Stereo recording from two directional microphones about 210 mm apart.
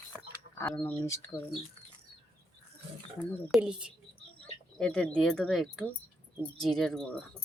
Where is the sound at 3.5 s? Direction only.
5° right (ahead or behind).